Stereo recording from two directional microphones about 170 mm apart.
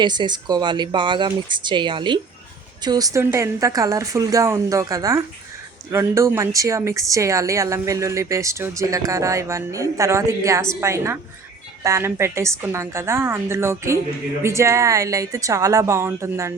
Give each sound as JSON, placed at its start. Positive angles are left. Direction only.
{"t": 0.0, "sound": "a woman's voice", "side_deg": -25}